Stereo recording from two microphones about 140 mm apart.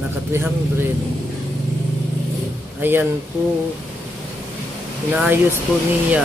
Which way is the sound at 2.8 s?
15° right (ahead or behind).